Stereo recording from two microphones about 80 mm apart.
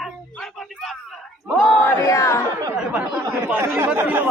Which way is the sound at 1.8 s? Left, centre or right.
Left.